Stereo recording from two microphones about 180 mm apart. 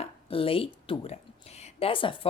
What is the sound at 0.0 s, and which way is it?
A woman's voice, 30° left (ahead or behind).